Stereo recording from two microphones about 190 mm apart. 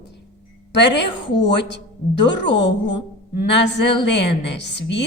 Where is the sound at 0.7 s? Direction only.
65° left (ahead or behind).